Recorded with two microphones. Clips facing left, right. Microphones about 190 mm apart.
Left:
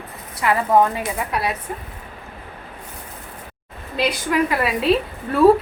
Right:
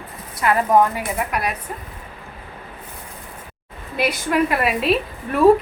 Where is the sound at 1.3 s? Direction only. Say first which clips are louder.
Left 1 dB; 30° left (ahead or behind).